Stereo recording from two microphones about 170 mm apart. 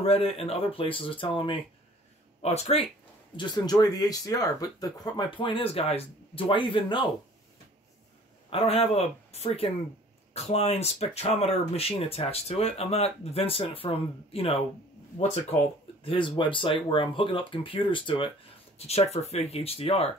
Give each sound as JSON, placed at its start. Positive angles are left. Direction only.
{"t": 0.0, "sound": "speech", "side_deg": 35}
{"t": 3.3, "sound": "speech", "side_deg": 25}
{"t": 8.5, "sound": "speech", "side_deg": 35}
{"t": 16.0, "sound": "speech", "side_deg": 30}